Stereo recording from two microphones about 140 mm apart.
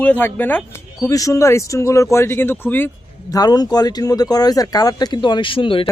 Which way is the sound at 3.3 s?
30° left (ahead or behind).